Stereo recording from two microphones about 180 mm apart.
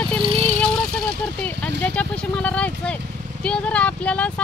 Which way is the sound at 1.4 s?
5° left (ahead or behind).